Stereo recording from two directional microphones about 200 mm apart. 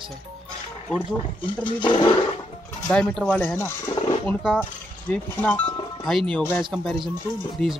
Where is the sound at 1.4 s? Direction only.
25° left (ahead or behind).